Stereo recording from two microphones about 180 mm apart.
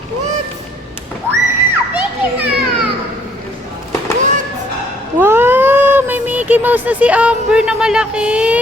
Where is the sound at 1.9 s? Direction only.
10° right (ahead or behind).